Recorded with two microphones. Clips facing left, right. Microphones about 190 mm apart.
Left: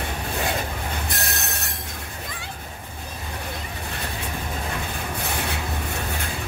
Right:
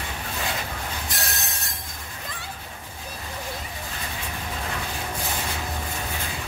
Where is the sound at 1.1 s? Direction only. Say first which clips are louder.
Left 2 dB; 65° left (ahead or behind).